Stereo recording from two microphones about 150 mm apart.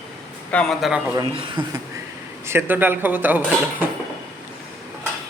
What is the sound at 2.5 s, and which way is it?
Speech, 15° right (ahead or behind).